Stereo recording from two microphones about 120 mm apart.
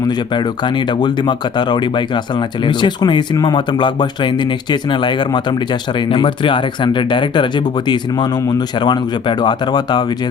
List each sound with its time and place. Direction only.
0.3 s speech: 40° left (ahead or behind)